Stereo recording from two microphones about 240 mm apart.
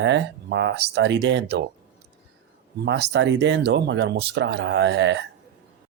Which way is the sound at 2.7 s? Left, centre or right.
Right.